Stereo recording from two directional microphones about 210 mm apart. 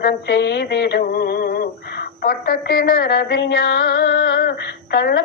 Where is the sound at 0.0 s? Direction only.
50° left (ahead or behind).